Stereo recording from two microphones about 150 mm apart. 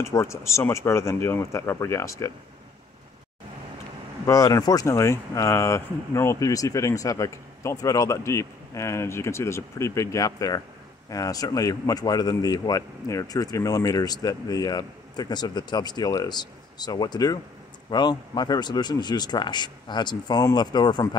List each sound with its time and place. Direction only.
0.0 s speech: 20° left (ahead or behind)
4.3 s speech: 25° left (ahead or behind)